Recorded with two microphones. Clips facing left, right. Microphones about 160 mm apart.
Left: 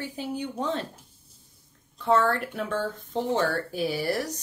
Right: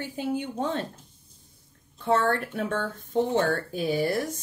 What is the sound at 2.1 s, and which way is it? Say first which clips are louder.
Speech: left 1 dB; 50° right (ahead or behind).